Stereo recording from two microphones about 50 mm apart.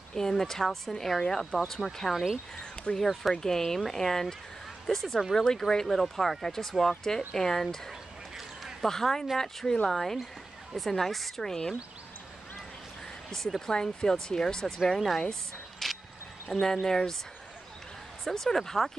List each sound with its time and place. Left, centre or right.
0.1 s speech: centre
5.3 s speech: centre
13.3 s speech: centre
15.0 s speech: centre
15.8 s a sound: centre
16.4 s speech: left
16.8 s speech: centre
18.2 s speech: centre